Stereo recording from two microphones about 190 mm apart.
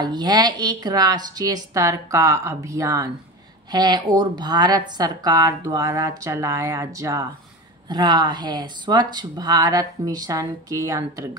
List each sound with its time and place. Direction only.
0.0 s a woman's voice: 20° right (ahead or behind)